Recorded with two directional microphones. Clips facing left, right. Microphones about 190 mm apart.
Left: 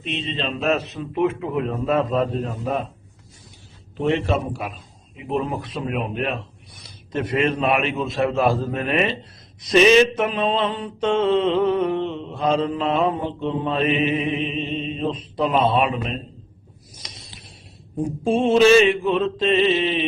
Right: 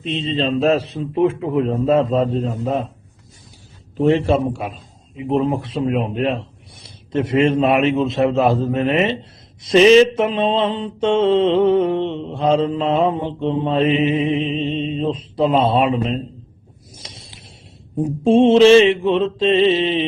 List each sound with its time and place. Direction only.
0.0 s mantra: 30° right (ahead or behind)
4.0 s mantra: 30° right (ahead or behind)
16.9 s a sound: 30° right (ahead or behind)
18.2 s mantra: 25° right (ahead or behind)